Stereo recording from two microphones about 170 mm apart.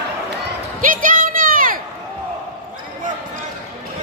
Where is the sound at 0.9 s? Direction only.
55° right (ahead or behind).